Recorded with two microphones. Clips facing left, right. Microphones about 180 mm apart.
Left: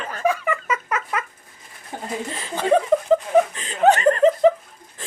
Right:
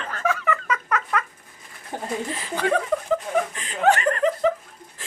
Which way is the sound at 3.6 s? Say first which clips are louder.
Left 3 dB; 25° left (ahead or behind).